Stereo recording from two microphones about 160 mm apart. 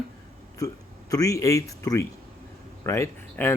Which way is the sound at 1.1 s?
20° left (ahead or behind).